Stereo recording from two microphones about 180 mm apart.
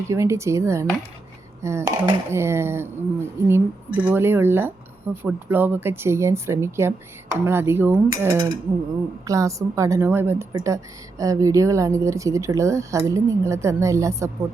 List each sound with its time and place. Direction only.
0.1 s speech: 15° right (ahead or behind)
8.1 s mechanisms: 20° right (ahead or behind)
9.2 s speech: 20° right (ahead or behind)